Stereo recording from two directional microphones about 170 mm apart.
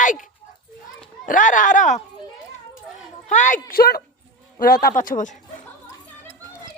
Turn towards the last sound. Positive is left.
turn(degrees=50)  # may be behind; listen again after turning